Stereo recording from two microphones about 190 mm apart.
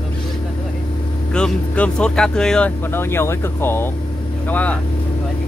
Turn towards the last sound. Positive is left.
turn(degrees=5)  # may be behind; listen again after turning